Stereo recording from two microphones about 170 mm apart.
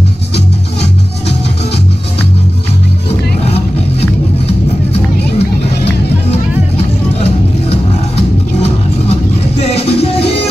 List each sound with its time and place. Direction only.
3.4 s music: 35° left (ahead or behind)
7.7 s music: 35° left (ahead or behind)